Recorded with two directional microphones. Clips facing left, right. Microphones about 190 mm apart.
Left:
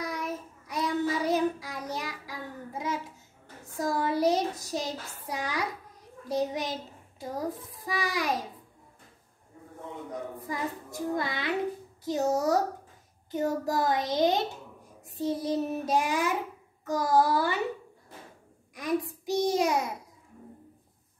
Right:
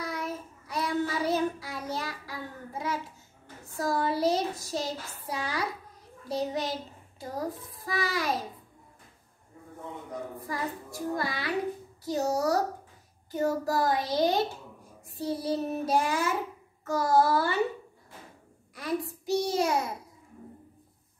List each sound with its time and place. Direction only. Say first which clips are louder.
0.0 s child singing: left 1 dB; 15° left (ahead or behind)
7.2 s a child's voice: left 1 dB; 15° left (ahead or behind)
10.5 s a child's voice: left 1 dB; 20° left (ahead or behind)
15.0 s child singing: left 1 dB; 20° left (ahead or behind)
18.8 s a child's voice: left 2 dB; 15° left (ahead or behind)